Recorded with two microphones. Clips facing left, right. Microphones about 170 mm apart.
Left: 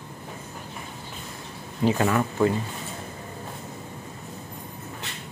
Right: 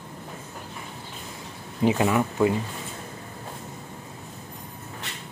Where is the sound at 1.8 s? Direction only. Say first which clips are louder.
Right 1 dB; 15° right (ahead or behind).